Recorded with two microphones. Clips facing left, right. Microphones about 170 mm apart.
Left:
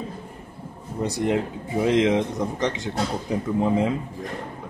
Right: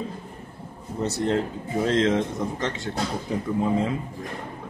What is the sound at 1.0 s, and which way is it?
A man's voice, 15° left (ahead or behind).